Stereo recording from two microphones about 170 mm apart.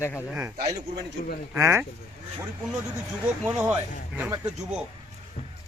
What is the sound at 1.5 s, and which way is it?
Speech, 15° right (ahead or behind).